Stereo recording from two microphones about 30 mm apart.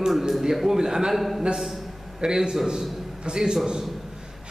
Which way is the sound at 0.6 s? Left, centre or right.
Centre.